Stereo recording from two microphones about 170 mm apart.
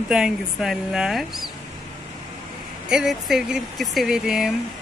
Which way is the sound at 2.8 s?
5° right (ahead or behind).